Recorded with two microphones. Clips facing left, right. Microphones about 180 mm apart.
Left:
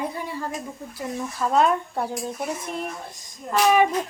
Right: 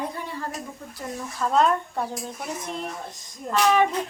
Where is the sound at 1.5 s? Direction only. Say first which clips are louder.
Left 1 dB; 10° left (ahead or behind).